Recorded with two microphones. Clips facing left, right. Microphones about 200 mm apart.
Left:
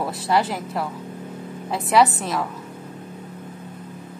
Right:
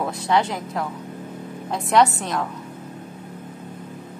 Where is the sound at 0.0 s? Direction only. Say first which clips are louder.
Even; 5° left (ahead or behind).